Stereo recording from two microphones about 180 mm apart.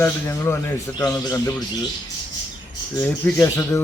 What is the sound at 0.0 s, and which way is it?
A man's voice, 15° left (ahead or behind).